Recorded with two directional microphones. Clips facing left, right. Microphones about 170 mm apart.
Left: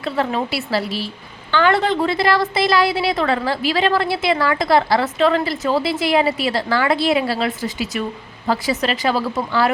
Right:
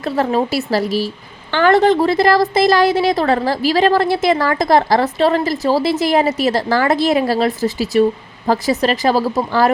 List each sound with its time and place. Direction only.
0.0 s a woman's voice: 40° right (ahead or behind)